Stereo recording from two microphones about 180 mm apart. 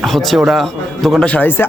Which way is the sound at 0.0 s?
Centre (ahead or behind).